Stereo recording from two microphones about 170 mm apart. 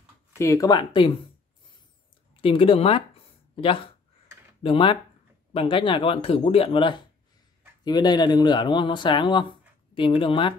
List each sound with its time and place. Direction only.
0.4 s speech: 20° left (ahead or behind)
2.4 s speech: 30° left (ahead or behind)